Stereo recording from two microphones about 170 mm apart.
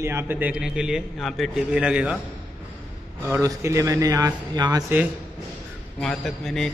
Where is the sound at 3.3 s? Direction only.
20° right (ahead or behind).